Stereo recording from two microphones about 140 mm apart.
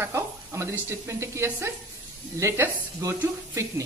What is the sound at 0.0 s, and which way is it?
A woman's voice, 20° right (ahead or behind).